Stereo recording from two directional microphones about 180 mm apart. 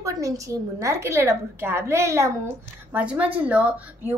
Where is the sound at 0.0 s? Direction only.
20° right (ahead or behind).